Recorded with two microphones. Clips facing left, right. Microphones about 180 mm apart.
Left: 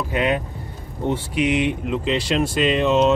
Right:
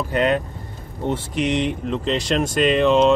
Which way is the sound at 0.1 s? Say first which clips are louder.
Right 2 dB; 10° left (ahead or behind).